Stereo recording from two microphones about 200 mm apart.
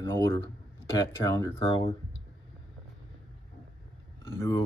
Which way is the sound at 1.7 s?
25° left (ahead or behind).